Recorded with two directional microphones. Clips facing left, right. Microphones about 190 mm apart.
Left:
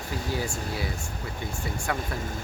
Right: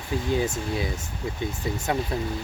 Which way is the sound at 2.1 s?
25° right (ahead or behind).